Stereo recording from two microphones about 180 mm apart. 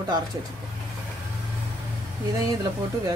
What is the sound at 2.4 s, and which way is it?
Speech, 20° right (ahead or behind).